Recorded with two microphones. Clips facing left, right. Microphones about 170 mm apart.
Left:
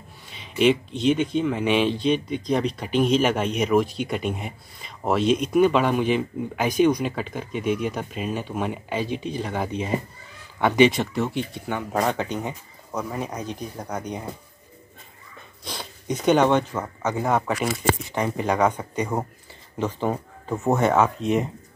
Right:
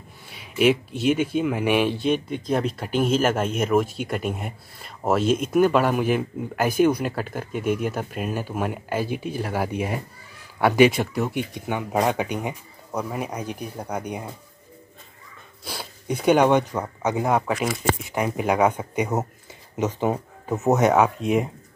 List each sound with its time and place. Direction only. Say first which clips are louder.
0.3 s speech: even; 5° right (ahead or behind)
2.1 s speech: left 1 dB; 50° right (ahead or behind)
2.4 s speech: even; 5° right (ahead or behind)
15.6 s speech: even; 5° right (ahead or behind)